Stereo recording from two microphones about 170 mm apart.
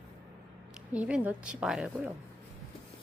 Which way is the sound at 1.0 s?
5° right (ahead or behind).